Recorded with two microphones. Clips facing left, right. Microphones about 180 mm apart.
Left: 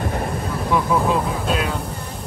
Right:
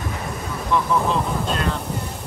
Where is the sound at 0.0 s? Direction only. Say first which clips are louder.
Left 5 dB; 55° left (ahead or behind).